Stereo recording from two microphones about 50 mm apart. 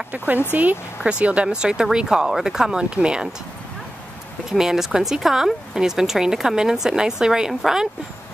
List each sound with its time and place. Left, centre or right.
0.5 s speech: right
1.2 s speech: right
4.5 s speech: centre